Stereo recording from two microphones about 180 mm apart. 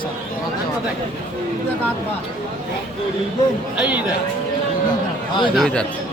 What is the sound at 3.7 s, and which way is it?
Speech, 5° right (ahead or behind).